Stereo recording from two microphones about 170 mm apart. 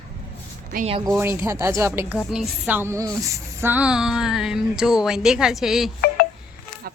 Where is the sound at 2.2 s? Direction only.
5° right (ahead or behind).